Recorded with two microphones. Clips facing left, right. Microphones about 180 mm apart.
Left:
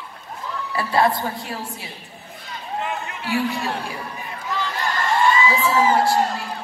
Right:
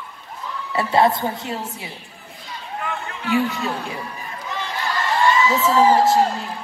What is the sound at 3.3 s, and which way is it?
Speech, 20° right (ahead or behind).